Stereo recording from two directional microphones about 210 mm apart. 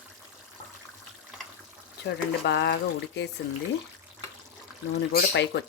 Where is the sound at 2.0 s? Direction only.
50° left (ahead or behind).